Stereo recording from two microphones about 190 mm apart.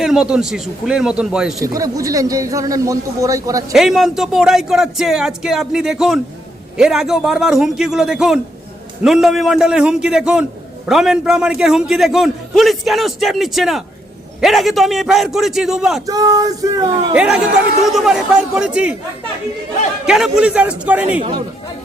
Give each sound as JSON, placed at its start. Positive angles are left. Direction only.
{"t": 0.0, "sound": "a man's voice", "side_deg": -5}
{"t": 1.6, "sound": "a man's voice", "side_deg": -15}
{"t": 3.7, "sound": "a man's voice", "side_deg": 0}
{"t": 16.0, "sound": "speech", "side_deg": -20}
{"t": 17.2, "sound": "a man's voice", "side_deg": -5}
{"t": 20.1, "sound": "a man's voice", "side_deg": -5}